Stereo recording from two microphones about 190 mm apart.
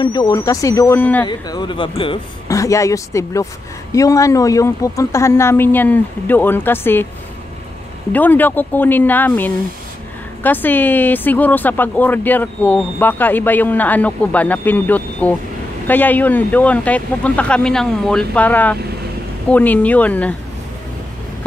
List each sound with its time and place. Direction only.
0.0 s speech: 20° left (ahead or behind)
1.2 s speech: 25° left (ahead or behind)
2.5 s speech: 15° left (ahead or behind)
8.1 s speech: 10° left (ahead or behind)